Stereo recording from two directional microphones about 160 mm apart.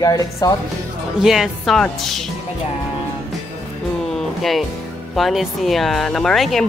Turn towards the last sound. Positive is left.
turn(degrees=0)  # may be behind; listen again after turning